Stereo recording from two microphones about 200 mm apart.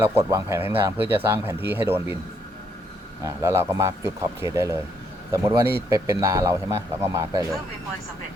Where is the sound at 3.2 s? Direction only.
15° right (ahead or behind).